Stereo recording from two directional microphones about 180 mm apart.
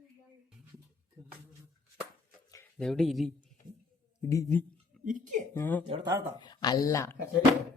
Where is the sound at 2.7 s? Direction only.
5° left (ahead or behind).